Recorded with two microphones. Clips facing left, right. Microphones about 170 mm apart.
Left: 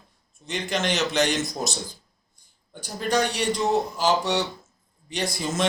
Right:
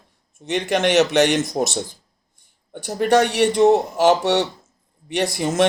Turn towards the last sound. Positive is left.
turn(degrees=-60)  # may be behind; listen again after turning